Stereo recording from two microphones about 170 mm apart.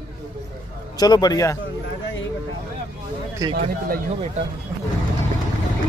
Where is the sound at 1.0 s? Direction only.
25° left (ahead or behind).